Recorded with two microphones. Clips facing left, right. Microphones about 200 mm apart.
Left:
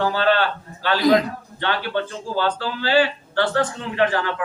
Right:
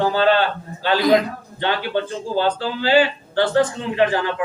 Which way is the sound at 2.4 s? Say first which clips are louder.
Right 3 dB; 15° right (ahead or behind).